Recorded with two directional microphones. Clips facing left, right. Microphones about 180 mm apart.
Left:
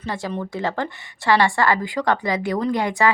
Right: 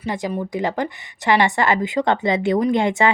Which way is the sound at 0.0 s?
15° right (ahead or behind).